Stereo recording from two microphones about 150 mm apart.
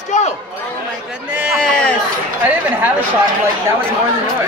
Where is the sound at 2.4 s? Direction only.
10° right (ahead or behind).